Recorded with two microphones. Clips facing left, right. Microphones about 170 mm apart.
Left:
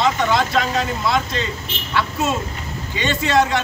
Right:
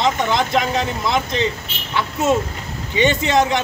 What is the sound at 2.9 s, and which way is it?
Speech, 20° right (ahead or behind).